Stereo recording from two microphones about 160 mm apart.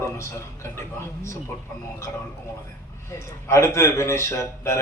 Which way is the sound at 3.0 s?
15° left (ahead or behind).